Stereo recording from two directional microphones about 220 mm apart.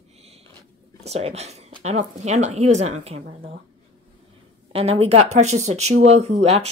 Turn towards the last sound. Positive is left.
turn(degrees=-30)  # may be behind; listen again after turning